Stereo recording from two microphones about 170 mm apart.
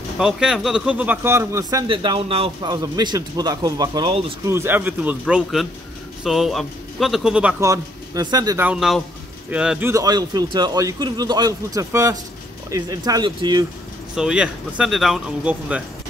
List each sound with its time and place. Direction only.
0.2 s speech: 5° right (ahead or behind)
5.2 s speech: centre (ahead or behind)
7.6 s speech: 20° right (ahead or behind)
8.6 s speech: centre (ahead or behind); by 13.7 s 25° right (ahead or behind)
14.1 s speech: 5° right (ahead or behind)